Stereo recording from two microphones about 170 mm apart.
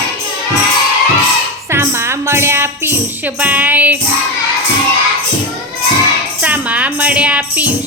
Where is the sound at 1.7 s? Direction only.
15° right (ahead or behind).